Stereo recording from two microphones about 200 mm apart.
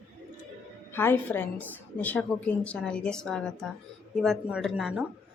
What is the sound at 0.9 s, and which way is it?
A woman's voice, 10° left (ahead or behind).